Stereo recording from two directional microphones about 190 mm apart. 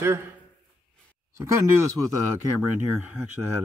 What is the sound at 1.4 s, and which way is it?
Speech, 15° right (ahead or behind).